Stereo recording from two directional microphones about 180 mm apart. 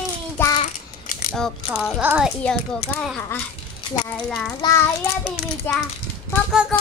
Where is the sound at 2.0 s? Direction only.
10° right (ahead or behind).